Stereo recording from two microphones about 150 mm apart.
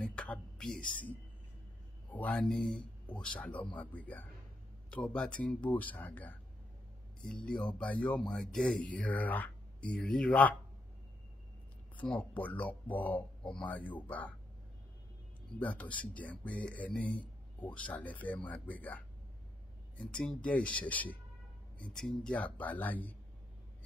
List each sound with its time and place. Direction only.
0.0 s a sound: 5° left (ahead or behind)
2.0 s speech: 10° left (ahead or behind)
12.0 s speech: 10° left (ahead or behind)
15.6 s speech: 10° left (ahead or behind)